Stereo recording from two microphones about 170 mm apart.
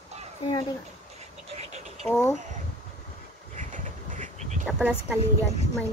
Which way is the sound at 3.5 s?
50° right (ahead or behind).